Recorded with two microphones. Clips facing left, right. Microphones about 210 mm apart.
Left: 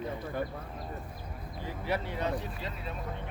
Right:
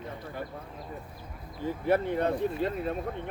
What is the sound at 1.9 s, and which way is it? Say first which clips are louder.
Speech: right 7 dB; 50° right (ahead or behind).